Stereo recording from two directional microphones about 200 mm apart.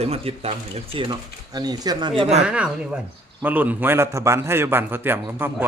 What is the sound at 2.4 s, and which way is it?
A man's voice, 5° right (ahead or behind).